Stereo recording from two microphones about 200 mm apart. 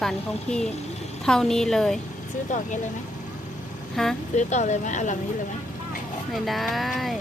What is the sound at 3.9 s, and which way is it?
Speech, centre (ahead or behind).